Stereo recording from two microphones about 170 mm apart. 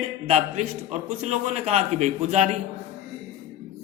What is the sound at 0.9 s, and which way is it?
A man's voice, 40° right (ahead or behind).